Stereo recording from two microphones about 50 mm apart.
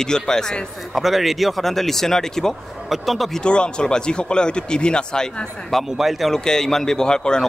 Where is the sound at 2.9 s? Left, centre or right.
Centre.